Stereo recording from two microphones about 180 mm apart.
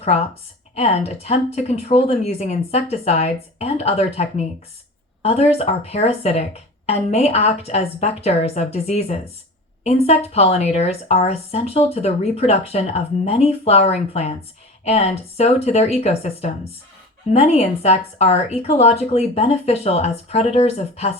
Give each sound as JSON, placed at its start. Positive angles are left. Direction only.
{"t": 0.0, "sound": "a woman's voice", "side_deg": 35}